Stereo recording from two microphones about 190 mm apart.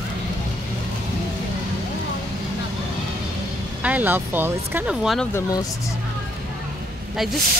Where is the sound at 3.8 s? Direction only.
10° right (ahead or behind).